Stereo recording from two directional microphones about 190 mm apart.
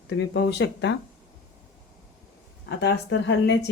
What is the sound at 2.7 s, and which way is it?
A woman's voice, 65° left (ahead or behind).